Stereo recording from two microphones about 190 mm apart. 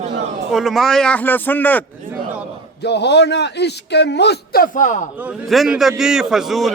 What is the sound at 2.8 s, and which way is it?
A man's voice, 60° left (ahead or behind).